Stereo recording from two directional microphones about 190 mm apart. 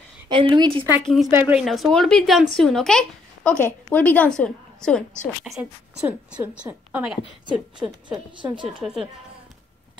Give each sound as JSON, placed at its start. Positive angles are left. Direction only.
{"t": 0.3, "sound": "a woman's voice", "side_deg": -25}
{"t": 1.0, "sound": "a woman's voice", "side_deg": 0}
{"t": 8.4, "sound": "a woman's voice", "side_deg": -25}
{"t": 8.6, "sound": "speech", "side_deg": 0}